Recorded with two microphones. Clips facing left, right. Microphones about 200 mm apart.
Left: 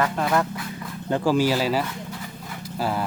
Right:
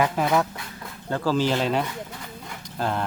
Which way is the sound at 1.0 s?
15° left (ahead or behind).